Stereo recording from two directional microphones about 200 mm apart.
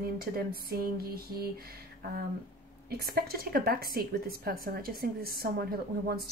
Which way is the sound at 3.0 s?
50° right (ahead or behind).